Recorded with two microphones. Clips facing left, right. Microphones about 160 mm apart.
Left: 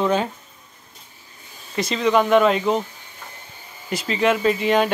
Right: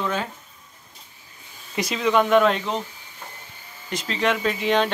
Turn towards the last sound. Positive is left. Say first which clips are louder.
# left 3 dB
turn(degrees=5)  # may be behind; listen again after turning